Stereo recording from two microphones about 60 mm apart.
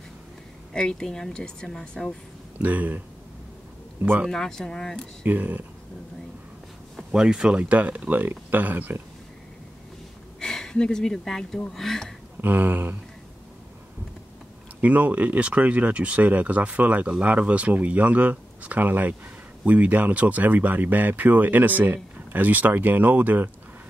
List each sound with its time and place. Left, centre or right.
0.7 s a woman's voice: centre
2.6 s speech: right
4.3 s a woman's voice: centre
5.2 s speech: right
7.1 s speech: centre
10.4 s speech: centre
12.4 s speech: right
14.8 s speech: right